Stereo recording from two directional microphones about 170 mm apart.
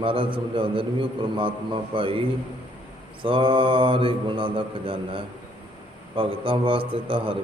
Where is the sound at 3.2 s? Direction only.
30° right (ahead or behind).